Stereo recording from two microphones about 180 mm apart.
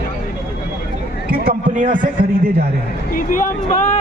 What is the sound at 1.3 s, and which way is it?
Speech, 55° right (ahead or behind).